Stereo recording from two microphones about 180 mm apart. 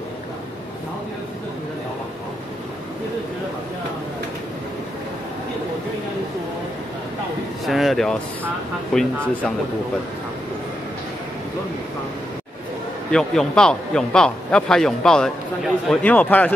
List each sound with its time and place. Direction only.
7.6 s a man's voice: centre (ahead or behind)
13.1 s a man's voice: 5° left (ahead or behind)